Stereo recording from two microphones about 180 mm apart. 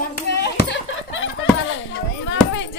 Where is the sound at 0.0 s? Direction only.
75° left (ahead or behind); by 1.8 s 90° left.